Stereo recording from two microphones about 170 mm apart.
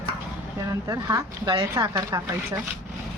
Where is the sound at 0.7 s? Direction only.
20° right (ahead or behind).